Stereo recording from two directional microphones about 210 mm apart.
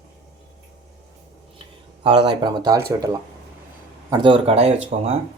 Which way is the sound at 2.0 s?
25° right (ahead or behind).